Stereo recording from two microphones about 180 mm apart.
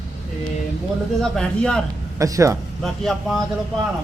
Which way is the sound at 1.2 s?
5° left (ahead or behind).